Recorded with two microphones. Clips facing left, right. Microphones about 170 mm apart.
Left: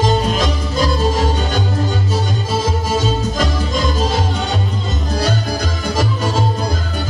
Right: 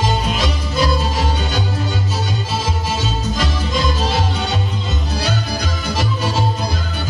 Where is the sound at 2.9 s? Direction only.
45° left (ahead or behind).